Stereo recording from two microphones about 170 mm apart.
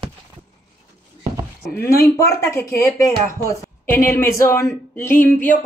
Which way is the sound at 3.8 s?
60° left (ahead or behind).